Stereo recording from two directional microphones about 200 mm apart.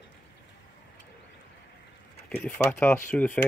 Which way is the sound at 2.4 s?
5° left (ahead or behind).